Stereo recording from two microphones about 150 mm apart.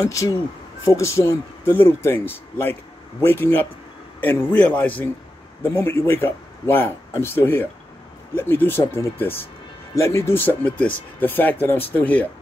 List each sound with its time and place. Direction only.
0.0 s a man's voice: 20° left (ahead or behind)